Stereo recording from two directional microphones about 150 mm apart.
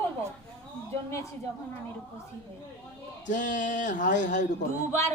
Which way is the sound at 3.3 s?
60° left (ahead or behind).